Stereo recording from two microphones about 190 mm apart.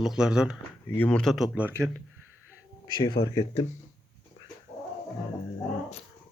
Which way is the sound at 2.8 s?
20° left (ahead or behind).